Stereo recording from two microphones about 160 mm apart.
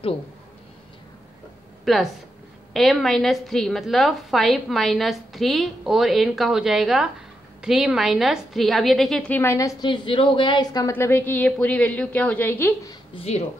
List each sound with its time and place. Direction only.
1.9 s a woman's voice: centre (ahead or behind)
9.4 s a woman's voice: 20° left (ahead or behind)
13.1 s speech: 40° left (ahead or behind)